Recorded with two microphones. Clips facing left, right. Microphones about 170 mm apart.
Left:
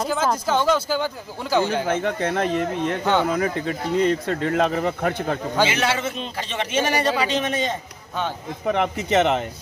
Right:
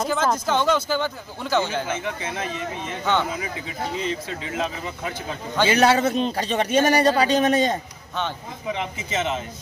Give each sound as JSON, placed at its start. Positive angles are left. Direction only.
{"t": 0.2, "sound": "speech", "side_deg": 10}
{"t": 1.7, "sound": "speech", "side_deg": 60}
{"t": 5.7, "sound": "a man's voice", "side_deg": -40}
{"t": 8.6, "sound": "speech", "side_deg": 65}